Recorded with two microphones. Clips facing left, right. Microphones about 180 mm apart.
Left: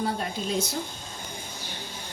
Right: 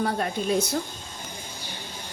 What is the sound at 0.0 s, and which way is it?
Speech, 60° right (ahead or behind).